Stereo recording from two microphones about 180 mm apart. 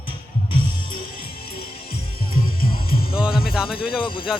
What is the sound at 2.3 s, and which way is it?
Music, 55° left (ahead or behind).